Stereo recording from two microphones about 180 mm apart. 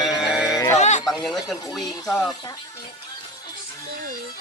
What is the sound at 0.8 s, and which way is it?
Speech, 40° left (ahead or behind).